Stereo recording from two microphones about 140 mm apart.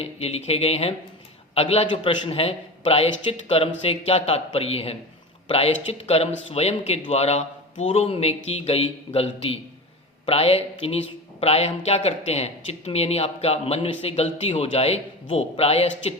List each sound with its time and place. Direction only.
0.0 s speech: 45° left (ahead or behind)